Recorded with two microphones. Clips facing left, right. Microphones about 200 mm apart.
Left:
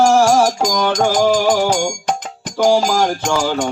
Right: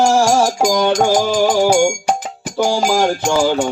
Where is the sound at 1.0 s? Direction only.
10° right (ahead or behind).